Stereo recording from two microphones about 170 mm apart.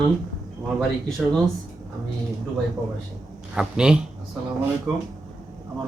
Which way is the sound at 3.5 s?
5° right (ahead or behind).